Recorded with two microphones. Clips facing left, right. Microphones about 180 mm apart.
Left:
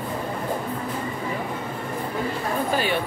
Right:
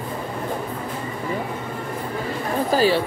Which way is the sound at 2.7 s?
35° right (ahead or behind).